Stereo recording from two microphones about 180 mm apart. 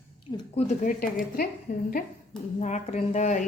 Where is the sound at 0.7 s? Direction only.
45° left (ahead or behind).